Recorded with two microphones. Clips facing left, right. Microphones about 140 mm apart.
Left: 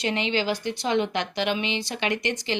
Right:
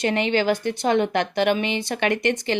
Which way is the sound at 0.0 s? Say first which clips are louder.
Right 5 dB; 50° right (ahead or behind).